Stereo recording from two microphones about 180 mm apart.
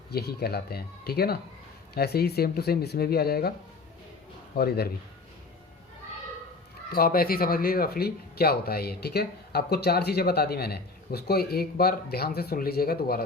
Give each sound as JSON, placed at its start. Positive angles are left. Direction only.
{"t": 0.1, "sound": "speech", "side_deg": 60}
{"t": 4.5, "sound": "speech", "side_deg": 60}
{"t": 6.9, "sound": "speech", "side_deg": 55}